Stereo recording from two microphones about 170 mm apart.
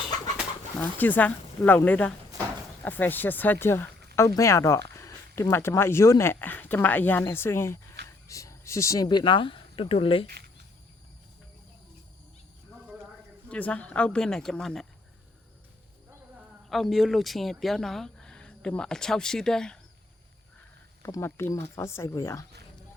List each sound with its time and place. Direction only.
0.8 s speech: 10° left (ahead or behind); by 10.2 s 30° left (ahead or behind)
13.5 s speech: 10° left (ahead or behind)
16.6 s speech: centre (ahead or behind)
21.0 s speech: 15° left (ahead or behind)